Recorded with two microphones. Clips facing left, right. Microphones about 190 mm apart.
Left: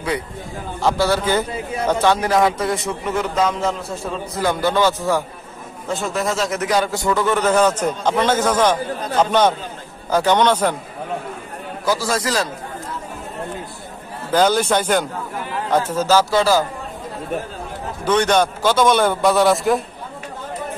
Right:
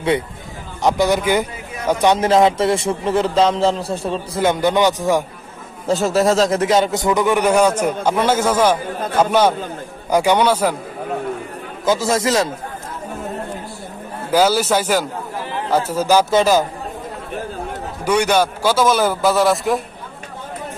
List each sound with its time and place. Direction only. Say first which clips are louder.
0.8 s a man's voice: right 2 dB; 15° right (ahead or behind)
5.9 s a man's voice: right 7 dB; 40° right (ahead or behind); by 10.8 s 10° right (ahead or behind)
11.8 s a man's voice: right 4 dB; 20° right (ahead or behind)
14.3 s a man's voice: right 1 dB; 5° right (ahead or behind)
18.0 s a man's voice: even; 10° right (ahead or behind)